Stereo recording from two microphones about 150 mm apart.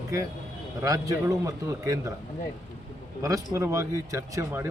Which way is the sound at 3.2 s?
20° right (ahead or behind).